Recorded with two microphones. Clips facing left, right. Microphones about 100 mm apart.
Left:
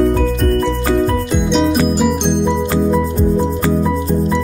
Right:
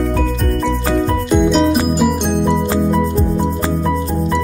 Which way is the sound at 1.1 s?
Centre (ahead or behind).